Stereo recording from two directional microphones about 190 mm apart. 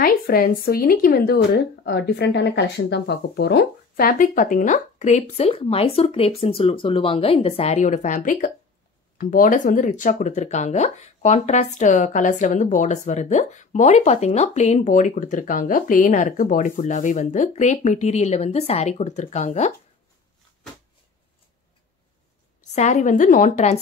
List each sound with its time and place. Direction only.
0.0 s speech: 50° left (ahead or behind); by 19.7 s 35° left (ahead or behind)
22.8 s speech: 40° left (ahead or behind)